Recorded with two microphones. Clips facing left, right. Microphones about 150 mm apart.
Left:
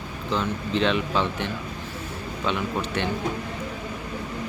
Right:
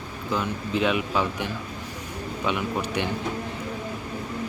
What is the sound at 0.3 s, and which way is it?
Speech, 10° right (ahead or behind).